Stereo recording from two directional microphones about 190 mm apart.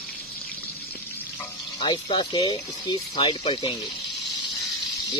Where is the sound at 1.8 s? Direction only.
25° left (ahead or behind).